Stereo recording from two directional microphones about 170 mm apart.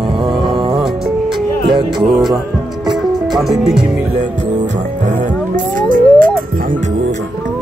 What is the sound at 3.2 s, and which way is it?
Music, centre (ahead or behind).